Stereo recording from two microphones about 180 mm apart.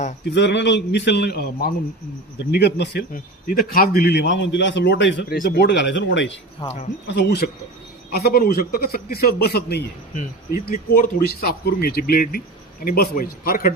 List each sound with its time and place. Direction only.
0.3 s speech: 75° left (ahead or behind)
3.1 s speech: 50° left (ahead or behind); by 5.4 s 80° left
5.4 s speech: 65° left (ahead or behind); by 6.3 s 85° left
6.6 s speech: 25° left (ahead or behind)
7.1 s speech: 70° left (ahead or behind); by 13.7 s 50° left (ahead or behind)